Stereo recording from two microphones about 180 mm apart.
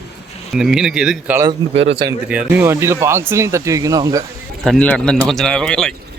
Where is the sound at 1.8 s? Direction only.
30° right (ahead or behind).